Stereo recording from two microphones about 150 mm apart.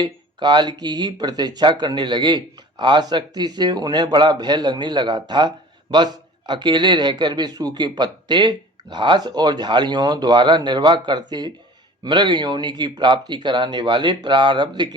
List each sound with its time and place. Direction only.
0.0 s speech: 30° right (ahead or behind)